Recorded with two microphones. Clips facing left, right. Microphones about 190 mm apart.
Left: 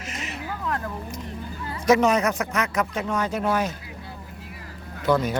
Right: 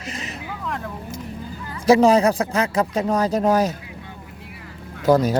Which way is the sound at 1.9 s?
30° right (ahead or behind).